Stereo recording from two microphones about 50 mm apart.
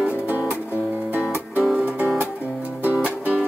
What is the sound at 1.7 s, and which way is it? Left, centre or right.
Music, right.